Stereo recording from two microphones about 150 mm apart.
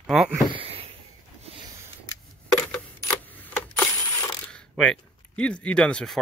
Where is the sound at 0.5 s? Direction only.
40° right (ahead or behind).